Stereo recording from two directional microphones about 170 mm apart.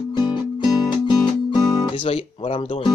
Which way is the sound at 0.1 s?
25° left (ahead or behind).